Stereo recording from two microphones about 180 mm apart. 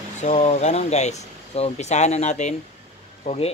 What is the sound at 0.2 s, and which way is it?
Speech, 40° left (ahead or behind).